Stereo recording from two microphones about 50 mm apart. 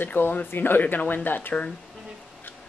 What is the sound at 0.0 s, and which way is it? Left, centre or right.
Speech, left.